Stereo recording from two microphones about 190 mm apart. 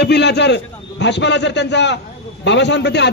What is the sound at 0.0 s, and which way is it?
A man's voice, 60° left (ahead or behind).